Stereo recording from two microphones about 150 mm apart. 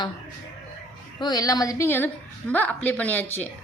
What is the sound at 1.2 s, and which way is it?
A woman's voice, 25° left (ahead or behind).